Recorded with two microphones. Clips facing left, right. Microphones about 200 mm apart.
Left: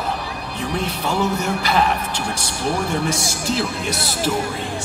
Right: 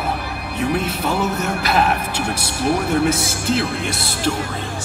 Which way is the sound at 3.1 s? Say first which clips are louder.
Right 3 dB; centre (ahead or behind).